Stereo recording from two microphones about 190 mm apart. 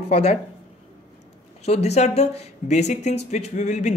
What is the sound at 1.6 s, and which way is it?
Speech, 35° left (ahead or behind).